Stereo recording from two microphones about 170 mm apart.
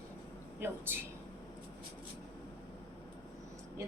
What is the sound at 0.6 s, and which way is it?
Speech, 10° right (ahead or behind).